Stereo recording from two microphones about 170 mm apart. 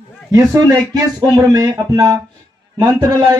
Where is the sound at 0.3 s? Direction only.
20° right (ahead or behind).